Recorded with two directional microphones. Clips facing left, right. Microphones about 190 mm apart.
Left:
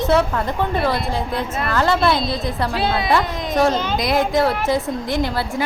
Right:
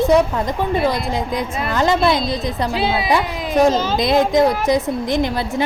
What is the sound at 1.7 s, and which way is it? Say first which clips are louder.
Speech: right 1 dB; 15° right (ahead or behind).